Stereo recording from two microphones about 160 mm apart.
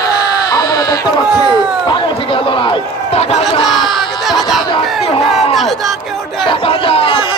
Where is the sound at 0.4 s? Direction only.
25° left (ahead or behind); by 3.4 s 40° left (ahead or behind).